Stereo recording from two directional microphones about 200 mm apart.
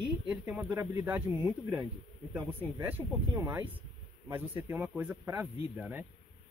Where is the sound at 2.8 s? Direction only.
10° right (ahead or behind).